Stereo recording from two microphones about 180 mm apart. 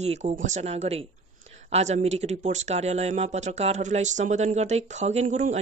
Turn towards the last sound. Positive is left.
turn(degrees=-40)  # may be behind; listen again after turning